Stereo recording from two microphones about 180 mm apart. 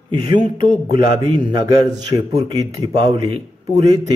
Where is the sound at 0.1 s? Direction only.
25° right (ahead or behind).